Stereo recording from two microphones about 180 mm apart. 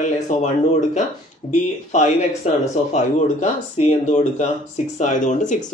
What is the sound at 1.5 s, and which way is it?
Speech, 40° left (ahead or behind).